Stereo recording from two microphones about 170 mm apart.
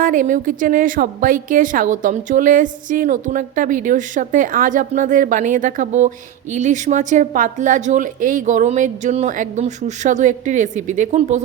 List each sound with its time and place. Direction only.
0.0 s a woman's voice: 50° right (ahead or behind)